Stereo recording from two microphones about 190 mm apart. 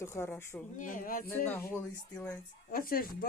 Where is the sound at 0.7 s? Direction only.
45° left (ahead or behind).